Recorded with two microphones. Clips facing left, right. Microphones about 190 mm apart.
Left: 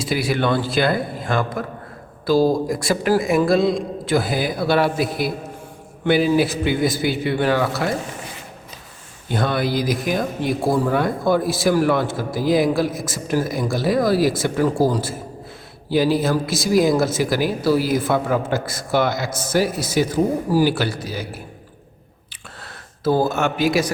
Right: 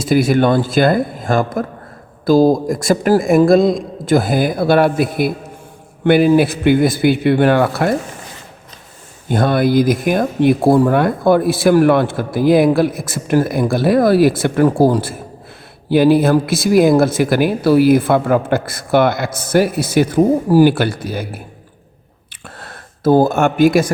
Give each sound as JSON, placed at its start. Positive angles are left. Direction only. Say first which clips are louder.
{"t": 0.0, "sound": "a man's voice", "louder": "right 8 dB", "side_deg": -45}
{"t": 9.3, "sound": "speech", "louder": "right 7 dB", "side_deg": -50}
{"t": 22.6, "sound": "speech", "louder": "right 6 dB", "side_deg": -50}